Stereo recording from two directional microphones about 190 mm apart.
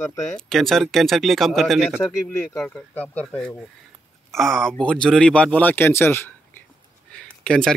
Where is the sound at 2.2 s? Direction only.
10° left (ahead or behind).